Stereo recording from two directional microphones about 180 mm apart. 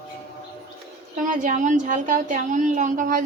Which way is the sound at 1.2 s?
45° right (ahead or behind).